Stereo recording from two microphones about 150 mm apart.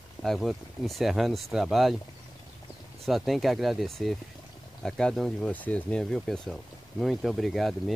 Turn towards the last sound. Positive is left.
turn(degrees=0)  # may be behind; listen again after turning